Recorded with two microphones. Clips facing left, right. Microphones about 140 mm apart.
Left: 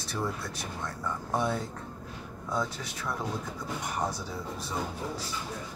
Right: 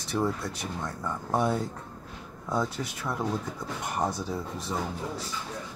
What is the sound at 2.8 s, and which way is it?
Speech, 20° right (ahead or behind).